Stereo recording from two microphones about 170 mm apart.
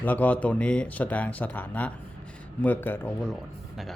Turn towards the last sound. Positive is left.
turn(degrees=10)  # may be behind; listen again after turning